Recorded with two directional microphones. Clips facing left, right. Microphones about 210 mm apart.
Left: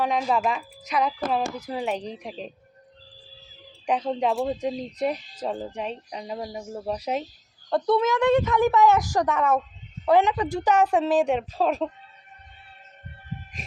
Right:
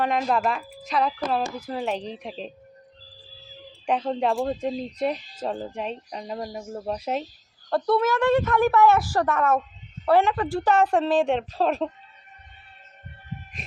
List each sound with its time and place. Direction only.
0.0 s a woman's voice: 5° left (ahead or behind)
1.8 s a woman's voice: 10° left (ahead or behind)
4.0 s a woman's voice: 10° left (ahead or behind)
7.7 s a woman's voice: 20° left (ahead or behind); by 11.9 s 5° left (ahead or behind)